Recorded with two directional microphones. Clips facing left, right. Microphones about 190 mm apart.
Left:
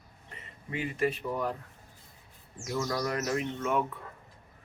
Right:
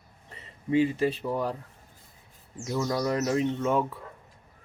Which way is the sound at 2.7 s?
25° right (ahead or behind).